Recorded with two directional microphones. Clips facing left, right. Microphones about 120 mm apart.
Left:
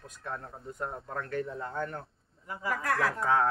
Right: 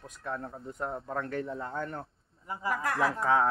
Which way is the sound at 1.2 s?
25° right (ahead or behind).